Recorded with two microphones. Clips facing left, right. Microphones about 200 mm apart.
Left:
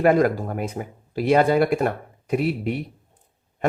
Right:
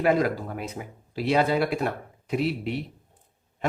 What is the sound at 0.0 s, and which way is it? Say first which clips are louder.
Speech: left 5 dB; 50° left (ahead or behind).